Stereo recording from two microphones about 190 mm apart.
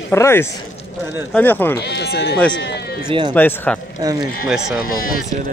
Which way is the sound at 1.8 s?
60° left (ahead or behind).